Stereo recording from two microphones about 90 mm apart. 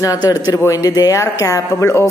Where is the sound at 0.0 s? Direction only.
45° left (ahead or behind).